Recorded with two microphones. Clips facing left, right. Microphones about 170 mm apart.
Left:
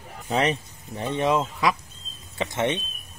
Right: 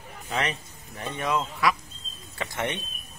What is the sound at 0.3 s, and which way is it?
Speech, 30° left (ahead or behind).